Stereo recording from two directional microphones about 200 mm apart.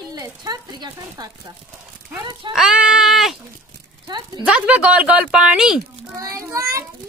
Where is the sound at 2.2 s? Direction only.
25° right (ahead or behind).